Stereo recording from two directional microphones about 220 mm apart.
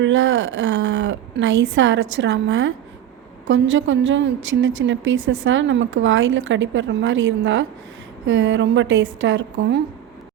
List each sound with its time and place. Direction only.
0.0 s a woman's voice: 60° right (ahead or behind)